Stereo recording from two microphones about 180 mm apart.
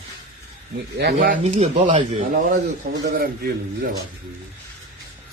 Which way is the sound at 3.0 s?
60° right (ahead or behind).